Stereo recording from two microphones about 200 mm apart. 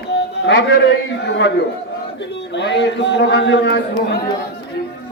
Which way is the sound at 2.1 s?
65° left (ahead or behind).